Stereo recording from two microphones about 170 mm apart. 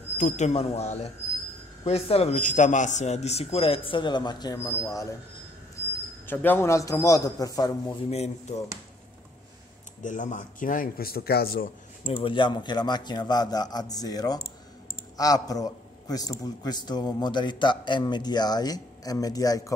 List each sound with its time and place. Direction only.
0.2 s a man's voice: 40° left (ahead or behind); by 5.0 s 20° left (ahead or behind)
6.2 s a man's voice: 10° left (ahead or behind)
8.1 s a man's voice: 40° left (ahead or behind)
10.0 s speech: 50° left (ahead or behind)
12.0 s a man's voice: 30° left (ahead or behind)